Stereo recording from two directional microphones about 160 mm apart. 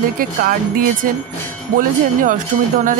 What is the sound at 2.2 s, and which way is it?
Wind chime, 55° right (ahead or behind).